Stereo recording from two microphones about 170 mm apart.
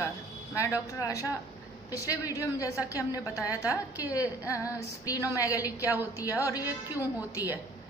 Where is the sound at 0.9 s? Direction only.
20° left (ahead or behind).